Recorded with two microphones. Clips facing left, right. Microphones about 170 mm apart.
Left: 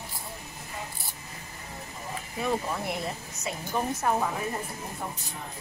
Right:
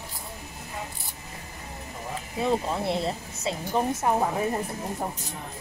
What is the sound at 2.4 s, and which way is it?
Speech, 25° right (ahead or behind).